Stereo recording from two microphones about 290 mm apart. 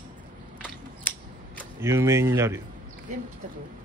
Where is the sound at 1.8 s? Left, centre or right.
Centre.